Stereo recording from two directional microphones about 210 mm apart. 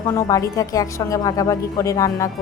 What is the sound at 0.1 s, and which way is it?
A woman's voice, 15° left (ahead or behind).